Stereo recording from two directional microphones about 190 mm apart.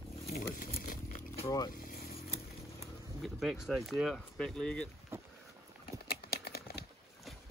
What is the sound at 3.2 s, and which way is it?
Speech, centre (ahead or behind).